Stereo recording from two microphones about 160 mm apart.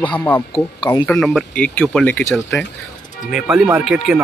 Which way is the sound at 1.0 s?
5° left (ahead or behind).